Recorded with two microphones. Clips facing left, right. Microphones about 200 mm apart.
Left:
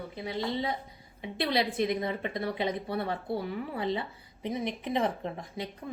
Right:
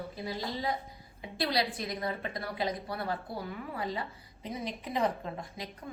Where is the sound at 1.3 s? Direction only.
25° left (ahead or behind).